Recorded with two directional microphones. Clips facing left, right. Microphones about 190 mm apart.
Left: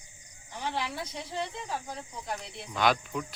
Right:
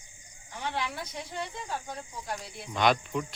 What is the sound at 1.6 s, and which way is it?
Speech, centre (ahead or behind).